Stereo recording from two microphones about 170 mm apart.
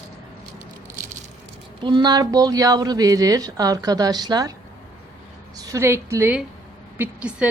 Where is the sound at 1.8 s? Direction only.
25° right (ahead or behind).